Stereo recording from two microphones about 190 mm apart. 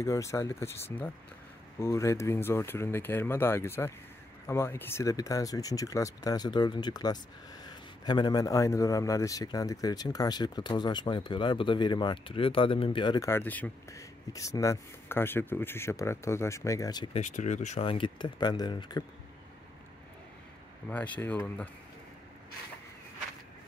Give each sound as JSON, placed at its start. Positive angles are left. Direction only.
{"t": 0.0, "sound": "a man's voice", "side_deg": 15}
{"t": 17.1, "sound": "a man's voice", "side_deg": 40}
{"t": 20.9, "sound": "speech", "side_deg": 10}